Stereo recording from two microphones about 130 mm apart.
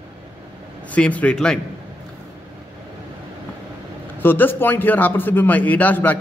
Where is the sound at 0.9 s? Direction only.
10° left (ahead or behind).